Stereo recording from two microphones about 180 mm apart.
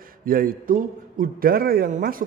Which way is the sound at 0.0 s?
50° right (ahead or behind).